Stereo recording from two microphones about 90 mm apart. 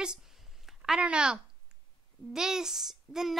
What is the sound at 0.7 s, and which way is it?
A woman's voice, 10° right (ahead or behind).